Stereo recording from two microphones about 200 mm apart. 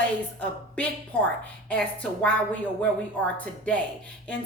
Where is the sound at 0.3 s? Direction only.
5° left (ahead or behind).